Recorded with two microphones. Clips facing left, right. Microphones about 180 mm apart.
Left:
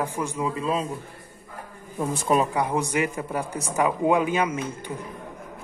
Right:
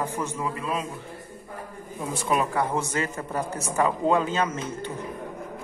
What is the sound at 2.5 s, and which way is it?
A man's voice, 15° left (ahead or behind).